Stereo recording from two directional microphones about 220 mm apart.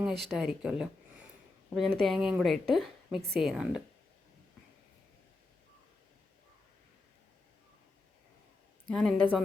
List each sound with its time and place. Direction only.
0.0 s a woman's voice: centre (ahead or behind)
8.9 s a woman's voice: 5° left (ahead or behind)